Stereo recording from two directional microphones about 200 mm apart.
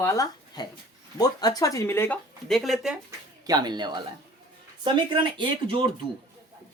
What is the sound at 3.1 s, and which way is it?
Speech, 20° right (ahead or behind).